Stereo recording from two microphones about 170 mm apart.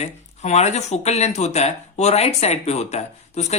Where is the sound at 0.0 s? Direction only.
40° left (ahead or behind).